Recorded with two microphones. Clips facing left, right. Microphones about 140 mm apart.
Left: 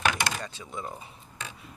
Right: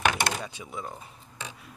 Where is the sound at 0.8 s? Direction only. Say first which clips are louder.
Left 1 dB; centre (ahead or behind).